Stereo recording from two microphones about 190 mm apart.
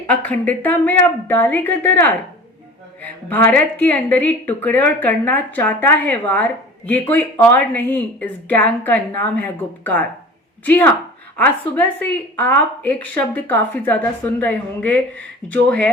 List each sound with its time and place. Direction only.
0.1 s speech: 10° left (ahead or behind)